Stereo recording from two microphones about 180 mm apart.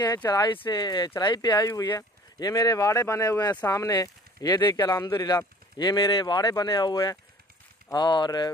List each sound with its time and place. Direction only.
0.0 s speech: 20° left (ahead or behind)